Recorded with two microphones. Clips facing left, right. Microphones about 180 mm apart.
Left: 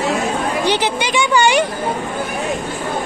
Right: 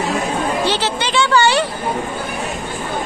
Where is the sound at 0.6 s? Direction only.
15° left (ahead or behind).